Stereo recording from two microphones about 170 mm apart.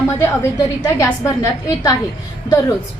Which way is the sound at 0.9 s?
15° left (ahead or behind).